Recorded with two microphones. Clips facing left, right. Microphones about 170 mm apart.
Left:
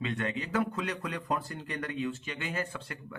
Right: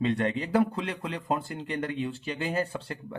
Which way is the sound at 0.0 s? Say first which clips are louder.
Right 6 dB; 35° right (ahead or behind).